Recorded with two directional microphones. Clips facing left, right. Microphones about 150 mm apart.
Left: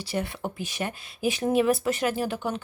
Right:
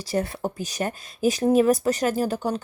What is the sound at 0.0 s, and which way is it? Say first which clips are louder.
Speech: right 4 dB; 40° right (ahead or behind).